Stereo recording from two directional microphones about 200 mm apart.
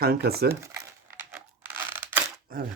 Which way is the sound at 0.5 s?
15° right (ahead or behind).